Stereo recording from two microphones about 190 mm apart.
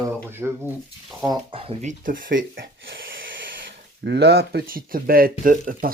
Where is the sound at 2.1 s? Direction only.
45° right (ahead or behind).